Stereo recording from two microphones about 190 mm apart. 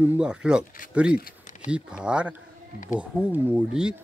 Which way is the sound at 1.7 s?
5° right (ahead or behind).